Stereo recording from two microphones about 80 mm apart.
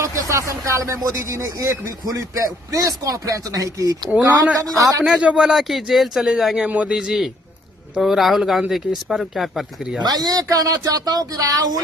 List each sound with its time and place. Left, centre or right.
0.0 s a man's voice: right
5.0 s speech: centre
6.7 s a man's voice: centre
10.0 s a man's voice: right